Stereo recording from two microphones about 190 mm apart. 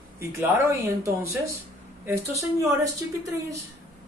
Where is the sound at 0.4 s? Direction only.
15° right (ahead or behind).